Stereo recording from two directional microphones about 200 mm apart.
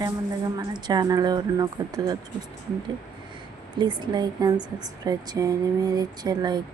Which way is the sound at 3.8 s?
20° right (ahead or behind).